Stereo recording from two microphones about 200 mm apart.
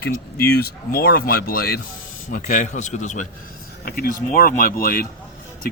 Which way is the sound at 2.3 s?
40° left (ahead or behind).